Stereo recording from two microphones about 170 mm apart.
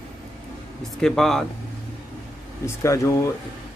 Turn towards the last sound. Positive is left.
turn(degrees=15)  # may be behind; listen again after turning